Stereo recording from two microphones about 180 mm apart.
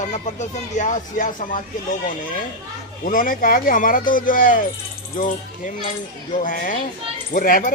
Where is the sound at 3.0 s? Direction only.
50° left (ahead or behind).